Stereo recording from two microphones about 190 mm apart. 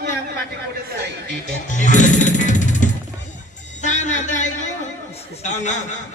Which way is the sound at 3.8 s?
40° left (ahead or behind).